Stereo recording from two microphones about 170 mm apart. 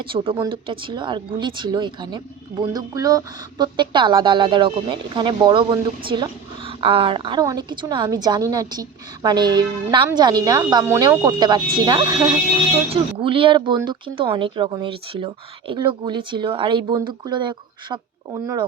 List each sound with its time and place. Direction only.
0.0 s speech: 30° right (ahead or behind)